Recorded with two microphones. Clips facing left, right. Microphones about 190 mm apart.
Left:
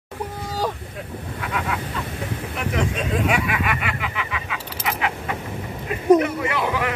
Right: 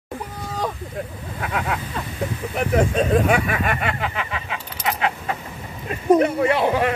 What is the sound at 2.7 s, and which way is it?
Speech, 45° right (ahead or behind).